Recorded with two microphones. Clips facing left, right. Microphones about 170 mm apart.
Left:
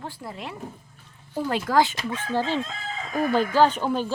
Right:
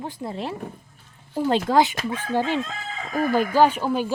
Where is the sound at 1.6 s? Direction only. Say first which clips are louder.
Right 2 dB; 20° right (ahead or behind).